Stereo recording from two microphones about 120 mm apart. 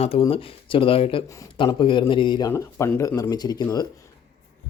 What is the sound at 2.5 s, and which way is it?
Speech, 20° left (ahead or behind).